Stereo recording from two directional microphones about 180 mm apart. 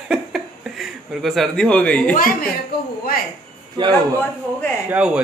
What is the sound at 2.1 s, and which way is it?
Speech, 50° left (ahead or behind).